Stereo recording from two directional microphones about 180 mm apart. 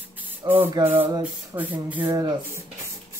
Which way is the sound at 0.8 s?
25° right (ahead or behind).